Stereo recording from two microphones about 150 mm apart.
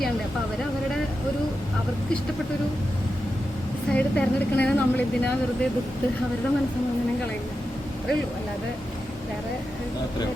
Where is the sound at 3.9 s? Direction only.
10° left (ahead or behind).